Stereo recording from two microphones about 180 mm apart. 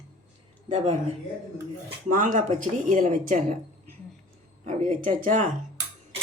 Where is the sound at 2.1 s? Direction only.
45° right (ahead or behind).